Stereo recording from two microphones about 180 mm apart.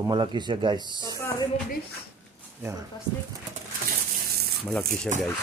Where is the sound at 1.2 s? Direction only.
15° left (ahead or behind).